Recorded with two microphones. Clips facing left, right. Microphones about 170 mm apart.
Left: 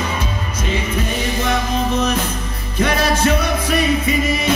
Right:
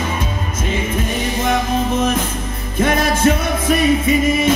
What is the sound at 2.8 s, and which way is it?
Music, 50° right (ahead or behind).